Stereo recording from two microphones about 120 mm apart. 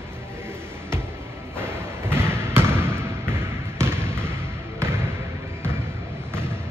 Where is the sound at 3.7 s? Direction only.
20° right (ahead or behind).